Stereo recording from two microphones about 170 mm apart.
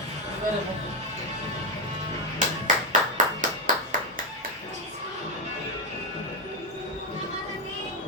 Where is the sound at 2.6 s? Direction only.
50° right (ahead or behind).